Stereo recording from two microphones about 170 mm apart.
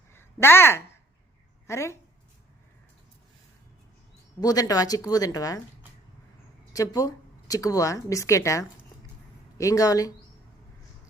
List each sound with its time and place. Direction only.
0.1 s a sound: 15° left (ahead or behind)
1.6 s a woman's voice: 15° left (ahead or behind)
4.4 s speech: 20° left (ahead or behind)
6.7 s speech: 20° left (ahead or behind)